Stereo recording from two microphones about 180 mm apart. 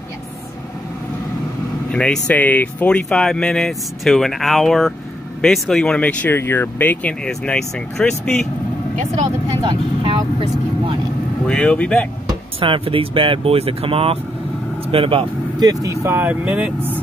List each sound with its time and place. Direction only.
1.9 s speech: 5° left (ahead or behind)
8.9 s speech: 40° right (ahead or behind)
9.6 s speech: 25° right (ahead or behind)
11.4 s speech: 5° left (ahead or behind)
12.3 s speech: 30° right (ahead or behind); by 16.9 s 5° right (ahead or behind)